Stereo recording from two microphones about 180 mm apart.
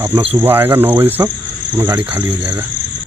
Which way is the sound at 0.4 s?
10° right (ahead or behind).